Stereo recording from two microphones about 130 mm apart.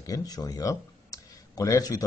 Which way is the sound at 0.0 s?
30° left (ahead or behind).